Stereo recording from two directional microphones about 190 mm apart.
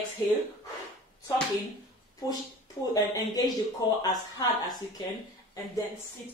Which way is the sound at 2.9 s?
20° left (ahead or behind).